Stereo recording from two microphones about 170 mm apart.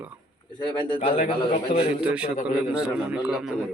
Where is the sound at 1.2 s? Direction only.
45° left (ahead or behind).